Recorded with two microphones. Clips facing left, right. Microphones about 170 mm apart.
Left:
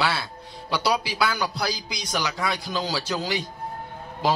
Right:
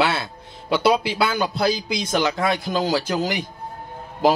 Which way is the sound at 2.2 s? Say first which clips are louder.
Right 6 dB; 50° right (ahead or behind).